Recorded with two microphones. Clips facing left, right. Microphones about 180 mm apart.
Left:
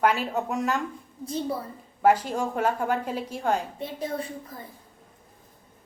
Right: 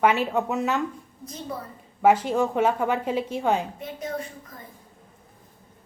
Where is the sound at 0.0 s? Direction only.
5° right (ahead or behind).